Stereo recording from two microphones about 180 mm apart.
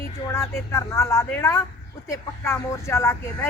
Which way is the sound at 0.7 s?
15° left (ahead or behind).